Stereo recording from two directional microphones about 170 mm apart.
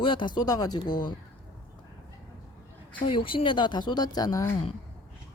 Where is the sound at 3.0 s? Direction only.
30° left (ahead or behind).